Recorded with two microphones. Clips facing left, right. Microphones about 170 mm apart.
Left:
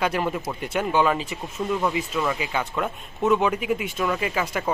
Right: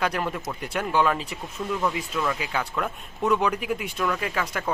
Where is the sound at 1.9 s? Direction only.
5° left (ahead or behind).